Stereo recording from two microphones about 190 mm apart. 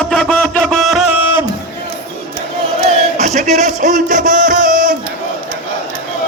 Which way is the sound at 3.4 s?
40° right (ahead or behind).